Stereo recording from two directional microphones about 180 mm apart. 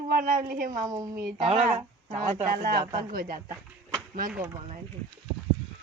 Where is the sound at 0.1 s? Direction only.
50° right (ahead or behind).